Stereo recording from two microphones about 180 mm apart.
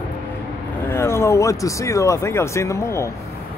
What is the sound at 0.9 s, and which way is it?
Speech, 15° left (ahead or behind).